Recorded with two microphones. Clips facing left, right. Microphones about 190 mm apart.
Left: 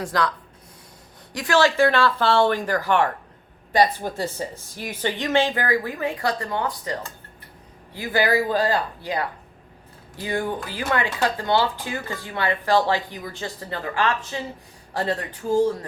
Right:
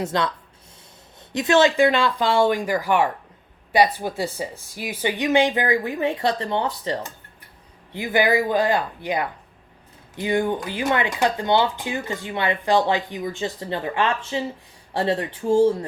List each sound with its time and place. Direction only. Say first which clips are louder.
0.0 s speech: right 1 dB; 25° right (ahead or behind)
1.3 s speech: right 2 dB; 20° right (ahead or behind)